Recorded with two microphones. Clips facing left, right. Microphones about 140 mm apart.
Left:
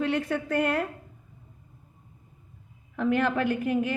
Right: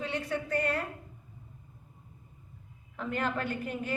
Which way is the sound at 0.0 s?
55° left (ahead or behind).